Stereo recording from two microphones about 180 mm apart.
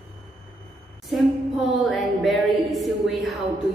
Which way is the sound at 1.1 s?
Centre (ahead or behind).